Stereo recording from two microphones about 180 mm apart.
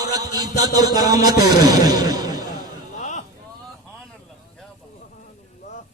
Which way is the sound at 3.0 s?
40° left (ahead or behind).